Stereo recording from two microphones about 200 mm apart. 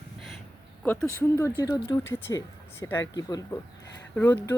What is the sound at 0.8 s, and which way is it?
Speech, 5° left (ahead or behind).